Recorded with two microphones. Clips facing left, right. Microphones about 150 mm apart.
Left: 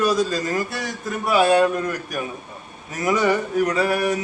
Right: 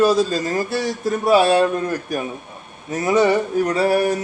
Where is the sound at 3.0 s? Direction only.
30° right (ahead or behind).